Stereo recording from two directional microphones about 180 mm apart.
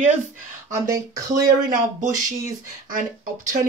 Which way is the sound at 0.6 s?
15° right (ahead or behind).